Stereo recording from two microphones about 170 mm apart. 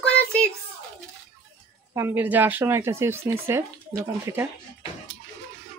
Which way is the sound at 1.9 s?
15° right (ahead or behind).